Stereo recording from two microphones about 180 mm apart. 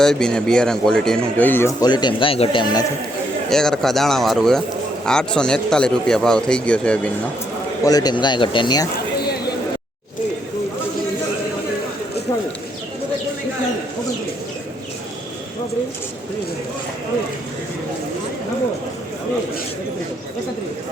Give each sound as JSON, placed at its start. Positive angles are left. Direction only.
{"t": 0.0, "sound": "speech", "side_deg": 5}
{"t": 1.8, "sound": "speech", "side_deg": 25}
{"t": 3.5, "sound": "speech", "side_deg": 5}
{"t": 7.9, "sound": "speech", "side_deg": 20}